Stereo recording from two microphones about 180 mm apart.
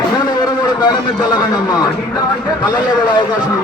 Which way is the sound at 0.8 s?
25° left (ahead or behind).